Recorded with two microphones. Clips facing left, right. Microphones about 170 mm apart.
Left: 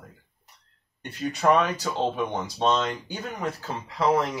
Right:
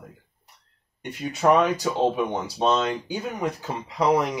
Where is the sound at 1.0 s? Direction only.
15° right (ahead or behind).